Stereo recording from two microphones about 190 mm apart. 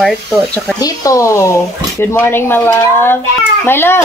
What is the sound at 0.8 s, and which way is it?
Speech, 15° left (ahead or behind).